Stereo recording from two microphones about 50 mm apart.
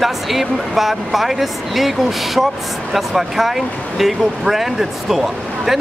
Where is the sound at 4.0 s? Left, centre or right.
Centre.